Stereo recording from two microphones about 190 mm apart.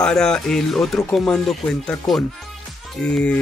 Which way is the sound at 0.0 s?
5° left (ahead or behind).